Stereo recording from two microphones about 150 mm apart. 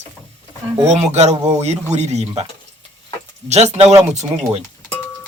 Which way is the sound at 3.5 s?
45° right (ahead or behind).